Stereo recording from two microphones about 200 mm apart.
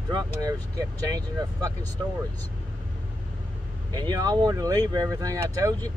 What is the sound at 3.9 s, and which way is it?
Speech, 20° right (ahead or behind).